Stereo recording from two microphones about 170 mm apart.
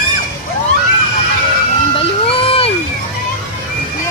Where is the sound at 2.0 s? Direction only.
35° left (ahead or behind).